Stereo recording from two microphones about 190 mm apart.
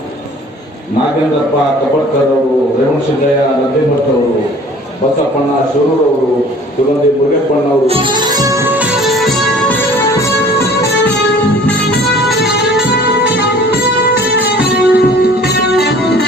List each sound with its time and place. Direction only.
7.9 s music: 30° right (ahead or behind)
9.0 s music: centre (ahead or behind)
14.3 s music: 55° left (ahead or behind)